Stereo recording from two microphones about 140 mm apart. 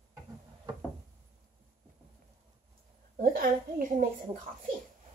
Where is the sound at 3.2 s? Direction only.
85° right.